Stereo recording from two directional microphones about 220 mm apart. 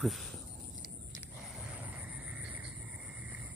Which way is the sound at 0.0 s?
Centre (ahead or behind).